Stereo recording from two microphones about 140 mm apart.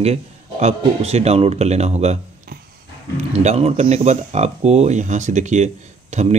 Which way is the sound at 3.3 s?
50° right (ahead or behind).